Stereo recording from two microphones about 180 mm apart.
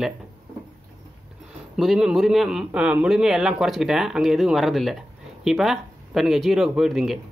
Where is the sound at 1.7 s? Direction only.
Centre (ahead or behind).